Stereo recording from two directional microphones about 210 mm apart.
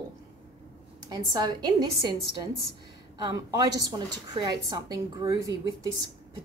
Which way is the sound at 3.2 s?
20° right (ahead or behind).